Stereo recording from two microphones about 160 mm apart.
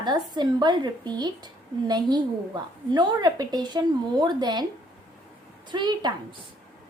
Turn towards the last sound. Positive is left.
turn(degrees=-25)  # may be behind; listen again after turning